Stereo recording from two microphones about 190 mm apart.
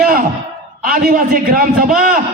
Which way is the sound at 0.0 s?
50° right (ahead or behind).